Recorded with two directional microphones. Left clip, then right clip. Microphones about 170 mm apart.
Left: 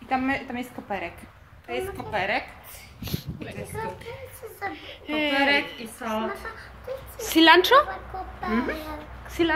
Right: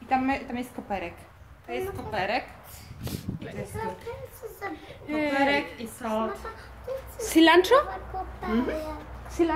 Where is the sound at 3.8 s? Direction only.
10° left (ahead or behind).